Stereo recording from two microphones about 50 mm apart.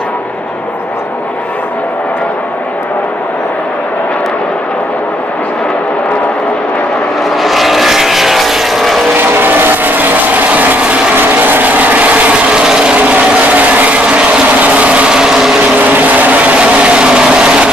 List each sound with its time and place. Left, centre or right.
7.2 s vehicle: centre
9.1 s vehicle: right; by 12.9 s centre
12.9 s ratchet: right; by 15.5 s centre
15.8 s vehicle: right; by 17.6 s centre